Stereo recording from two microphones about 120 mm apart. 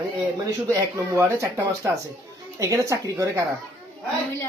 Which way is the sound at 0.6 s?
25° right (ahead or behind).